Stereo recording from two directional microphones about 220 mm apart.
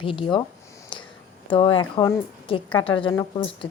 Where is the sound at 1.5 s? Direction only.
25° left (ahead or behind).